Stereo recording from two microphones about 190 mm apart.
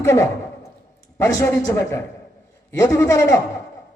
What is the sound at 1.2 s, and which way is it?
A man's voice, 15° left (ahead or behind).